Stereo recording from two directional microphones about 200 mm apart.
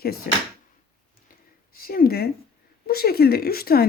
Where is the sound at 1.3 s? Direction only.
45° left (ahead or behind).